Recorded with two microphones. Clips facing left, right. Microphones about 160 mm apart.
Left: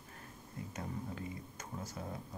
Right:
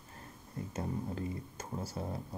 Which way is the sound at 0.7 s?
30° right (ahead or behind).